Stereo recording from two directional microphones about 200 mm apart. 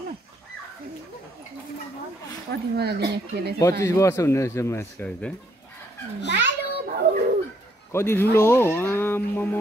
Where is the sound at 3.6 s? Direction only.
15° left (ahead or behind).